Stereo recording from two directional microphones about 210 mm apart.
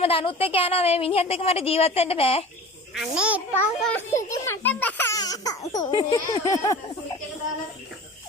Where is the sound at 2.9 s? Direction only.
5° right (ahead or behind).